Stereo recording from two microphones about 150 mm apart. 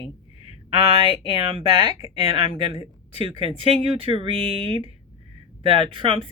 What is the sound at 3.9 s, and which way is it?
Speech, 40° right (ahead or behind).